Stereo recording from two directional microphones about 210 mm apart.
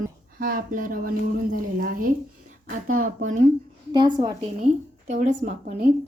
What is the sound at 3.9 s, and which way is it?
Speech, 20° right (ahead or behind).